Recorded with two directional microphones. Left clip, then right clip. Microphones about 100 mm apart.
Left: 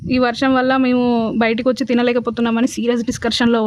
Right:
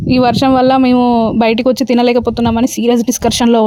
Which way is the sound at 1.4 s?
35° right (ahead or behind).